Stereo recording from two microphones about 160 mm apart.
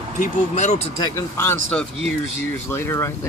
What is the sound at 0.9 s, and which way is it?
Speech, 25° left (ahead or behind).